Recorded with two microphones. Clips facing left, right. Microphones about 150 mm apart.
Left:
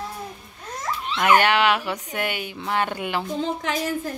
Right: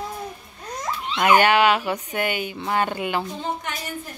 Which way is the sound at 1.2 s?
Centre (ahead or behind).